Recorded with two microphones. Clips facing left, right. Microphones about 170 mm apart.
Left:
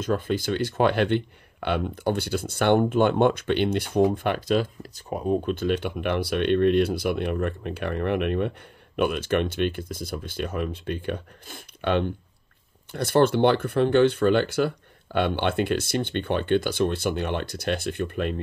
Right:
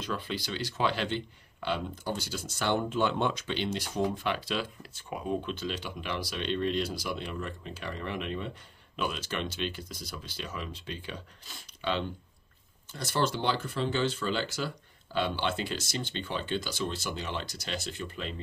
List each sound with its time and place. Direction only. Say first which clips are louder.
0.0 s speech: left 10 dB; 50° left (ahead or behind)
5.5 s speech: left 10 dB; 55° left (ahead or behind)